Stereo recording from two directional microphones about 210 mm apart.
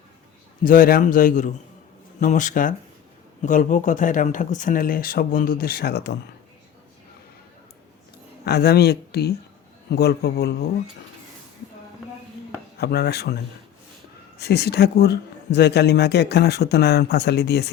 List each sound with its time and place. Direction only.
0.6 s speech: 40° left (ahead or behind)
8.4 s speech: 50° left (ahead or behind)
12.8 s speech: 50° left (ahead or behind)